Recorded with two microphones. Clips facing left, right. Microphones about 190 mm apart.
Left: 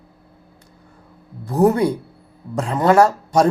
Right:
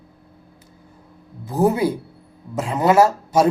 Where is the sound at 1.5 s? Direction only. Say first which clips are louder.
Left 2 dB; 5° right (ahead or behind).